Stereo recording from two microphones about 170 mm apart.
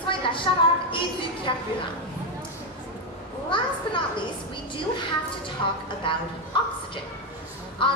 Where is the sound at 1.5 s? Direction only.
25° left (ahead or behind).